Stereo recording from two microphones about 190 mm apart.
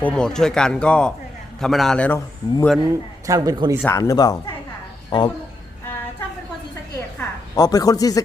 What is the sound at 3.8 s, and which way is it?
Speech, 15° left (ahead or behind).